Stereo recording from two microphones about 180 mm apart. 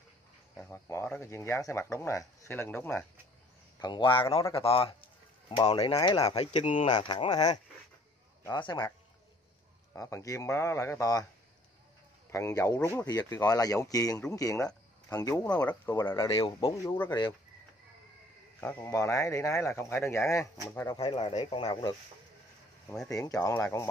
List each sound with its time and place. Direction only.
0.6 s speech: 15° left (ahead or behind)
3.8 s speech: 25° left (ahead or behind)
9.9 s speech: 15° left (ahead or behind)
12.3 s speech: 15° left (ahead or behind)
18.6 s speech: 10° left (ahead or behind)
21.0 s speech: 30° left (ahead or behind)
23.0 s speech: 20° left (ahead or behind)